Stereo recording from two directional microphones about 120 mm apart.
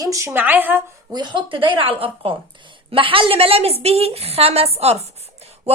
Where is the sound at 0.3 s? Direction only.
15° right (ahead or behind).